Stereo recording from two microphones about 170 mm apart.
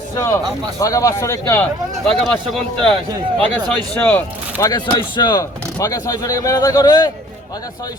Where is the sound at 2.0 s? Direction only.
5° left (ahead or behind).